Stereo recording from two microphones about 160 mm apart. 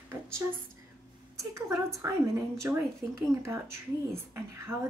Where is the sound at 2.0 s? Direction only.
20° right (ahead or behind).